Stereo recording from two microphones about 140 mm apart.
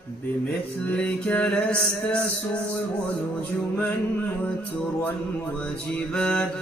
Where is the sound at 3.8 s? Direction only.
15° left (ahead or behind).